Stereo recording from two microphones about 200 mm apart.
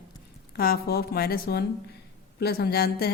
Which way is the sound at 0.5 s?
50° left (ahead or behind).